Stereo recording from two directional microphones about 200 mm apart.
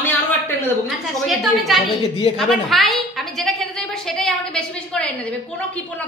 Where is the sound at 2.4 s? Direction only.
Centre (ahead or behind).